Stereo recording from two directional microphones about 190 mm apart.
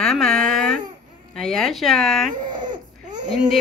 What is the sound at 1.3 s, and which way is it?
Speech, centre (ahead or behind).